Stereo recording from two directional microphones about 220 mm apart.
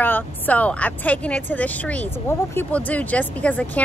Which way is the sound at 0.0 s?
5° left (ahead or behind).